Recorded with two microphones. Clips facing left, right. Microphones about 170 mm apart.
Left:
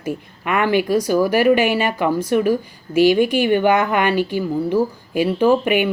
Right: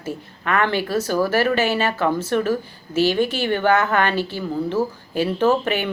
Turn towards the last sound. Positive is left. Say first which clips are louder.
# left 4 dB
turn(degrees=15)  # may be behind; listen again after turning